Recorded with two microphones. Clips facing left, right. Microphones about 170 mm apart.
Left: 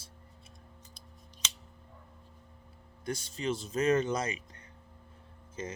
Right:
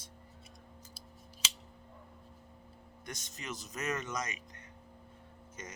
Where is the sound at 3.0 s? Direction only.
30° left (ahead or behind).